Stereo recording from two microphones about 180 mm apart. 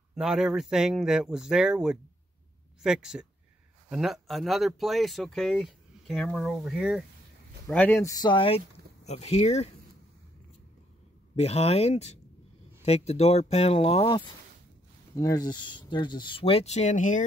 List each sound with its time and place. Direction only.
0.1 s speech: 5° right (ahead or behind)
7.6 s speech: 10° left (ahead or behind); by 9.7 s 40° left (ahead or behind)
11.3 s speech: 35° left (ahead or behind)